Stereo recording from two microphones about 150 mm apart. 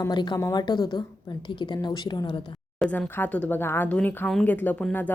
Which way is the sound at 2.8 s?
10° left (ahead or behind).